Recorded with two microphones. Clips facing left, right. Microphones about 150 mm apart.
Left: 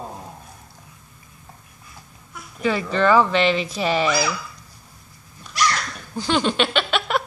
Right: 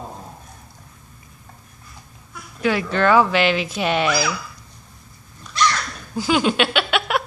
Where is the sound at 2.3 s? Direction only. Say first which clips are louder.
Right 1 dB; centre (ahead or behind).